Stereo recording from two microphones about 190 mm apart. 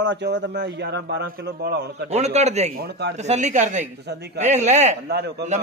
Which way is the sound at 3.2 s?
40° right (ahead or behind).